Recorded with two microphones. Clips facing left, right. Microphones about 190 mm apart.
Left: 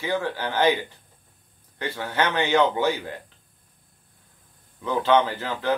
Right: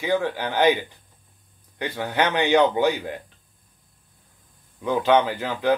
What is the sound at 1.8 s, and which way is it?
Speech, 15° right (ahead or behind).